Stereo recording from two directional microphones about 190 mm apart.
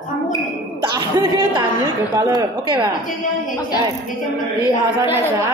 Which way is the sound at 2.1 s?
25° right (ahead or behind).